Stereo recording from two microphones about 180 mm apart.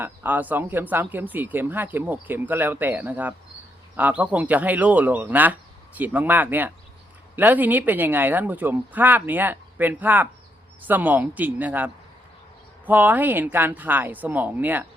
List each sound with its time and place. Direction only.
0.0 s speech: 10° right (ahead or behind)